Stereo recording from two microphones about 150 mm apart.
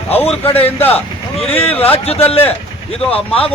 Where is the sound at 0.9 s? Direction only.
40° left (ahead or behind).